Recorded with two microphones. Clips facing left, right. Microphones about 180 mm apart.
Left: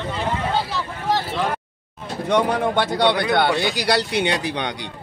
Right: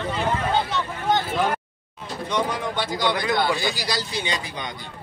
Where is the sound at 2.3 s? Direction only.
60° left (ahead or behind).